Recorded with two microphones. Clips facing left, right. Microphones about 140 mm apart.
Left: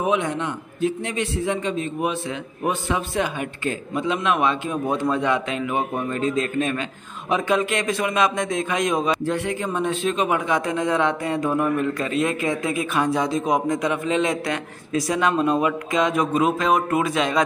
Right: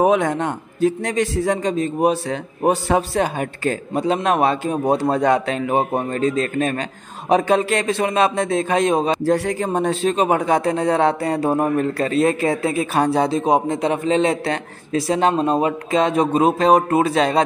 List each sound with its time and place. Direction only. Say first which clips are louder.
0.0 s a man's voice: right 6 dB; 45° right (ahead or behind)